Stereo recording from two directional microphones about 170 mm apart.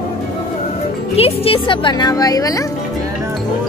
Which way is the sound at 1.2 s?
30° left (ahead or behind).